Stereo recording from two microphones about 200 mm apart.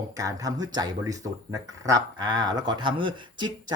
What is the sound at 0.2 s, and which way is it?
Speech, 15° right (ahead or behind).